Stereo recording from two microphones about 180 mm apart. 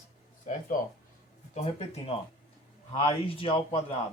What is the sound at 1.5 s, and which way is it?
A man's voice, 35° left (ahead or behind).